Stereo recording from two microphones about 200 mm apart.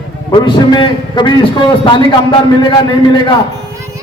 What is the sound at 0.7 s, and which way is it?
A man's voice, 25° left (ahead or behind).